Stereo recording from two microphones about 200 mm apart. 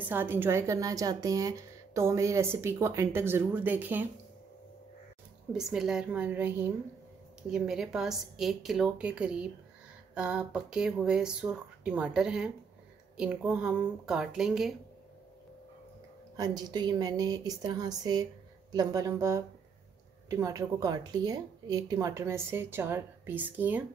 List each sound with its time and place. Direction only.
0.0 s a woman's voice: 10° right (ahead or behind)
5.5 s speech: 5° right (ahead or behind)
16.3 s a woman's voice: 20° right (ahead or behind)